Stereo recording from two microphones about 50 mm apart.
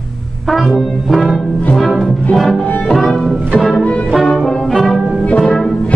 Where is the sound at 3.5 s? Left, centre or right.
Centre.